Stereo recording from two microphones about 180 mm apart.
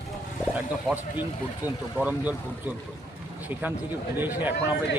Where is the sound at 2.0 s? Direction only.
10° right (ahead or behind).